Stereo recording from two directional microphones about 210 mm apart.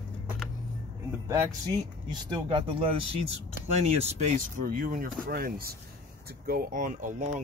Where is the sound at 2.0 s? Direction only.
25° right (ahead or behind).